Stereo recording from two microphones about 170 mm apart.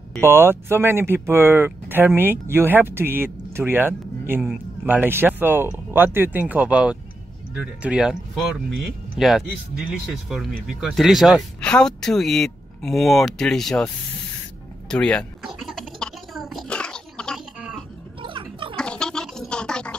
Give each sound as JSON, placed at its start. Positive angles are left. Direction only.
{"t": 0.2, "sound": "speech", "side_deg": -15}
{"t": 14.9, "sound": "a sound", "side_deg": 5}
{"t": 18.2, "sound": "gargling", "side_deg": -30}
{"t": 18.8, "sound": "gargling", "side_deg": 5}